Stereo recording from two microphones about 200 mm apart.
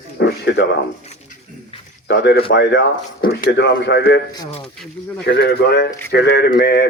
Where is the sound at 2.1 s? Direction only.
55° left (ahead or behind).